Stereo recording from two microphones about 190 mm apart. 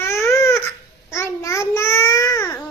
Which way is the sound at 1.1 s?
15° left (ahead or behind).